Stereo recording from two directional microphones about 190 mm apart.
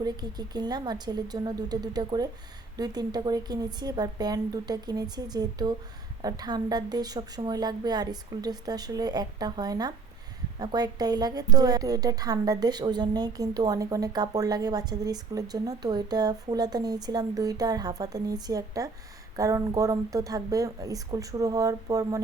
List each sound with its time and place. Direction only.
0.0 s a woman's voice: 20° right (ahead or behind)